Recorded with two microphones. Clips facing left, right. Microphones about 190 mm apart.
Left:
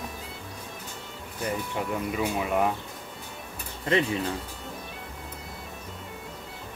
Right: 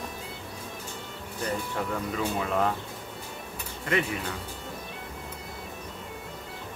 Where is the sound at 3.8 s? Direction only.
30° left (ahead or behind).